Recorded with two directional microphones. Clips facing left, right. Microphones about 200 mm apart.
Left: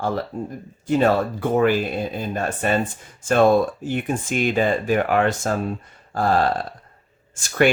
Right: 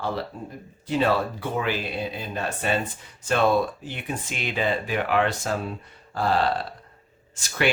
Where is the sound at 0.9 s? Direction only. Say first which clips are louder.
Left 5 dB; 50° left (ahead or behind).